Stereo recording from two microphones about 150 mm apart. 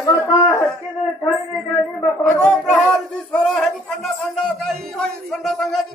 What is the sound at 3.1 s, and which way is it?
Music, 5° left (ahead or behind).